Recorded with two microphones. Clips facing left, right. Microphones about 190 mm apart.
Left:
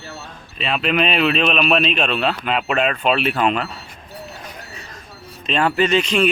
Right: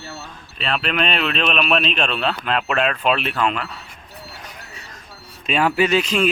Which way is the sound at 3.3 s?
20° left (ahead or behind).